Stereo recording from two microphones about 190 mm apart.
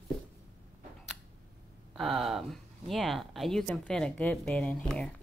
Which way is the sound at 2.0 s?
Centre (ahead or behind).